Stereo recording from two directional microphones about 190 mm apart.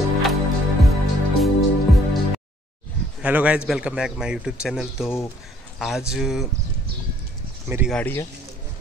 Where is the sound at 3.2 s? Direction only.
5° right (ahead or behind).